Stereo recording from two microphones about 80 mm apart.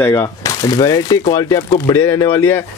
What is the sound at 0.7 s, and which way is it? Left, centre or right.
Speech, left.